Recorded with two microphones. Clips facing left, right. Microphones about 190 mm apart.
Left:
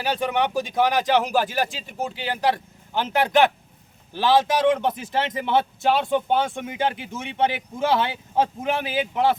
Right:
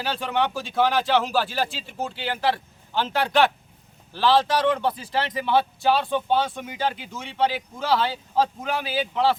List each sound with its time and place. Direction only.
0.0 s speech: 15° left (ahead or behind)